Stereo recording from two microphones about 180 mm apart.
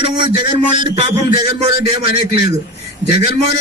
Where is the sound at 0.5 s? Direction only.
25° right (ahead or behind).